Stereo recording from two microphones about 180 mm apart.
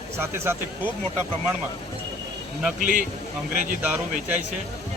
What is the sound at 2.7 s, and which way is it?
Speech, 50° right (ahead or behind).